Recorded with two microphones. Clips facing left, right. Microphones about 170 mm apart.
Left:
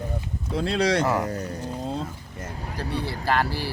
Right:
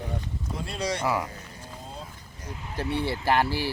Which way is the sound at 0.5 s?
75° left (ahead or behind).